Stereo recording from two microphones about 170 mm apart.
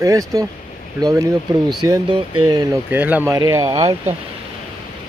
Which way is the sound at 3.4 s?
20° right (ahead or behind).